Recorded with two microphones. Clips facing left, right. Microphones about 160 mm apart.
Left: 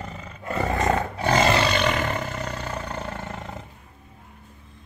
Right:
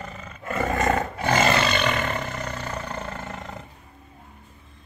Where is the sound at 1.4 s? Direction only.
15° left (ahead or behind).